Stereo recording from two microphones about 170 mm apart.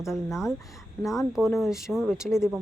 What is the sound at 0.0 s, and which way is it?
Speech, centre (ahead or behind).